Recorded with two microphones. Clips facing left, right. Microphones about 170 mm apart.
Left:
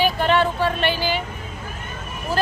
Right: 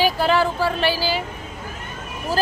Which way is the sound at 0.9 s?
35° right (ahead or behind).